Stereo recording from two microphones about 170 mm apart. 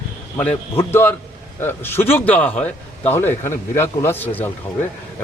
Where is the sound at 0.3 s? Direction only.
10° left (ahead or behind).